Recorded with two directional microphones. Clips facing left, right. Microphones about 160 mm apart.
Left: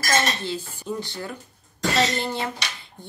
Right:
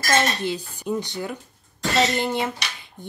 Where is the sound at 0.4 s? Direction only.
20° right (ahead or behind).